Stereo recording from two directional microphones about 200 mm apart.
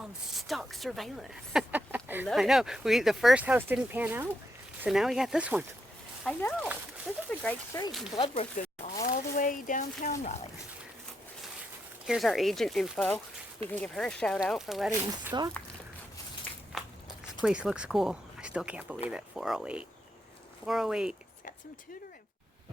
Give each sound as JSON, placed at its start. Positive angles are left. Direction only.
{"t": 0.0, "sound": "speech", "side_deg": 0}
{"t": 7.3, "sound": "speech", "side_deg": 10}
{"t": 8.1, "sound": "speech", "side_deg": 30}
{"t": 9.0, "sound": "speech", "side_deg": 40}
{"t": 12.0, "sound": "speech", "side_deg": 0}
{"t": 16.7, "sound": "biting", "side_deg": 0}
{"t": 17.4, "sound": "speech", "side_deg": -5}